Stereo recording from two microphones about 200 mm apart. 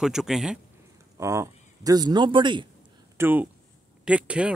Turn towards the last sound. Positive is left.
turn(degrees=-5)  # may be behind; listen again after turning